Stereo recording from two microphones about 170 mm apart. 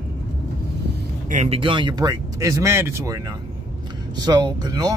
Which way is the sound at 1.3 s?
40° right (ahead or behind).